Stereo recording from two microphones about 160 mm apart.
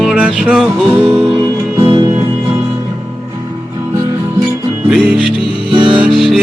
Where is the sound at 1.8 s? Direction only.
30° right (ahead or behind).